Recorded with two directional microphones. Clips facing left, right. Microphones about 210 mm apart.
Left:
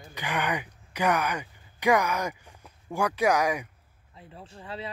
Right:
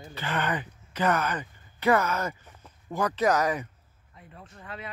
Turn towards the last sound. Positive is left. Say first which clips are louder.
# left 3 dB
turn(degrees=30)  # may be behind; listen again after turning